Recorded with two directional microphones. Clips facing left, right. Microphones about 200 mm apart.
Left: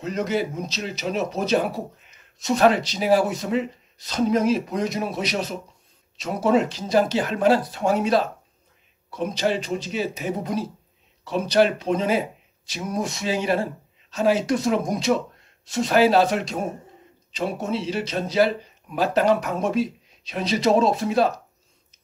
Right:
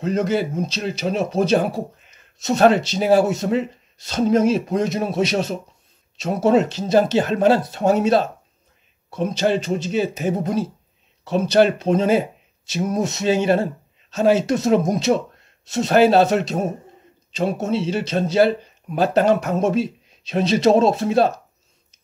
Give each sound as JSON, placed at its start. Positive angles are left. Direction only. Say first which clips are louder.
{"t": 0.0, "sound": "speech", "louder": "right 4 dB", "side_deg": -30}